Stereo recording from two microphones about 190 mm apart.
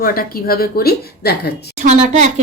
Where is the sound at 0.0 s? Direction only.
50° left (ahead or behind).